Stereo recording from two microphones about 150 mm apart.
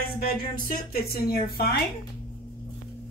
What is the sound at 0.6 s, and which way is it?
Speech, 80° left.